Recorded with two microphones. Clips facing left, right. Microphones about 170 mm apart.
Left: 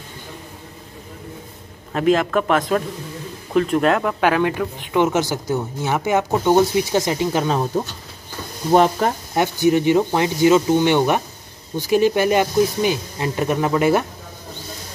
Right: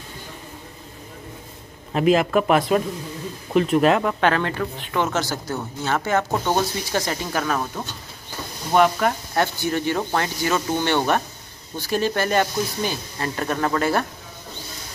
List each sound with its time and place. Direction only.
1.9 s a man's voice: 5° right (ahead or behind); by 9.1 s 35° left (ahead or behind)
9.3 s speech: 15° left (ahead or behind)